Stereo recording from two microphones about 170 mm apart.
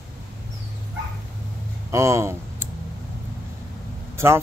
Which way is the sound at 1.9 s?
15° right (ahead or behind).